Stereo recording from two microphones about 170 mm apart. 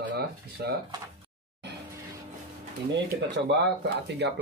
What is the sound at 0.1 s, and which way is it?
Speech, 70° right (ahead or behind).